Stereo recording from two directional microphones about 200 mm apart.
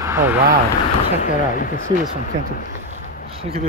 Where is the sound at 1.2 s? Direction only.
45° left (ahead or behind).